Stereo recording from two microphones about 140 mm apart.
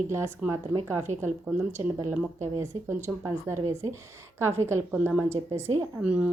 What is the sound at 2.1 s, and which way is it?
A woman's voice, 20° right (ahead or behind).